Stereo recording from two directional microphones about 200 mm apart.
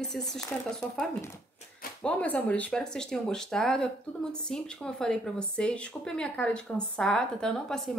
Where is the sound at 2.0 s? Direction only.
5° left (ahead or behind).